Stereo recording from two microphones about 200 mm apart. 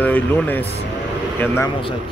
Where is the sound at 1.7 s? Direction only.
25° left (ahead or behind).